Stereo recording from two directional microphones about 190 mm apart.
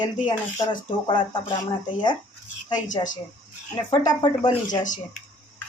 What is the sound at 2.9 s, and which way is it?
Speech, 40° left (ahead or behind).